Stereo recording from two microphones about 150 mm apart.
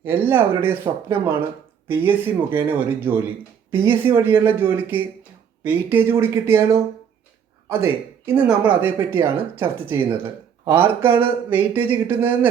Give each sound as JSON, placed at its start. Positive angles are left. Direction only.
{"t": 0.0, "sound": "speech", "side_deg": -15}